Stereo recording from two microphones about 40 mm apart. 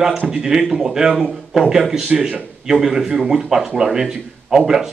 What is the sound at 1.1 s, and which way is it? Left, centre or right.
Speech, right.